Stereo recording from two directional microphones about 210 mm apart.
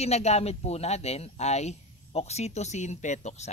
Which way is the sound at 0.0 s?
30° left (ahead or behind).